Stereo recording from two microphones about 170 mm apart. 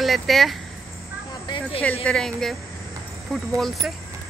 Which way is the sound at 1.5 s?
30° left (ahead or behind).